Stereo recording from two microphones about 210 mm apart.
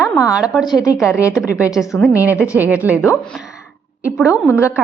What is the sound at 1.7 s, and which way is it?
A woman's voice, centre (ahead or behind).